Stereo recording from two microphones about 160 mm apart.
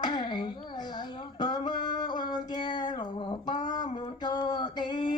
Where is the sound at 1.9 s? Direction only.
25° left (ahead or behind).